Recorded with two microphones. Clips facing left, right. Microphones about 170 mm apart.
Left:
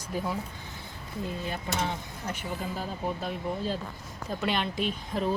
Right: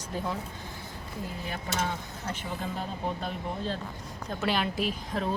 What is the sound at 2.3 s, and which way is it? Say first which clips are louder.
Speech: even; centre (ahead or behind).